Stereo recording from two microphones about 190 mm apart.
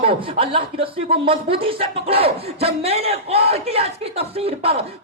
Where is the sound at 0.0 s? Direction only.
30° right (ahead or behind).